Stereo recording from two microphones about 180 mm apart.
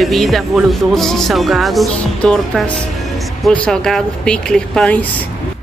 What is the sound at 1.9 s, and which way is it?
Speech, 5° left (ahead or behind).